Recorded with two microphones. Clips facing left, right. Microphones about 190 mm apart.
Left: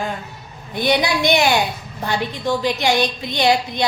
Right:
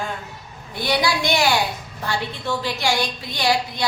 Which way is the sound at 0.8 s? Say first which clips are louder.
Left 3 dB; 20° left (ahead or behind).